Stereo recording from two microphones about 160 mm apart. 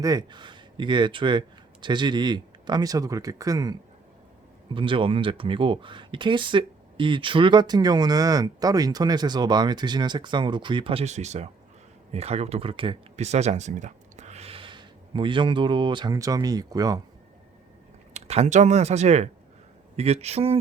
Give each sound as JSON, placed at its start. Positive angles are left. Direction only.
{"t": 0.0, "sound": "speech", "side_deg": -25}
{"t": 18.1, "sound": "speech", "side_deg": -40}